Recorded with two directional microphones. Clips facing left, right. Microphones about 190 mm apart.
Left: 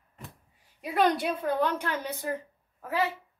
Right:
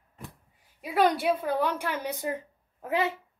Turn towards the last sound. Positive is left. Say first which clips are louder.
# right 1 dB
turn(degrees=-20)  # may be behind; listen again after turning